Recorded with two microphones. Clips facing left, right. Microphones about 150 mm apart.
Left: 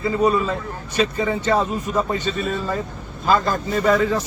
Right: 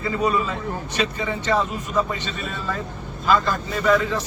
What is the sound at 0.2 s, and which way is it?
Speech, 35° left (ahead or behind).